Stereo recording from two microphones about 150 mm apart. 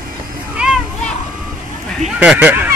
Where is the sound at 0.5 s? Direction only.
5° right (ahead or behind).